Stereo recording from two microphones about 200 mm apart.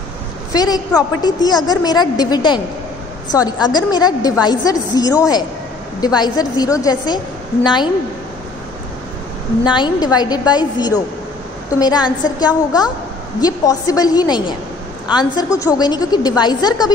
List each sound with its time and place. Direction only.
0.5 s a woman's voice: 20° left (ahead or behind)
9.7 s a woman's voice: 20° left (ahead or behind)